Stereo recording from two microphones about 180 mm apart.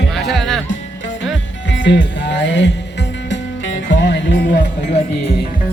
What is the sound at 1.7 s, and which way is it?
Music, 85° left.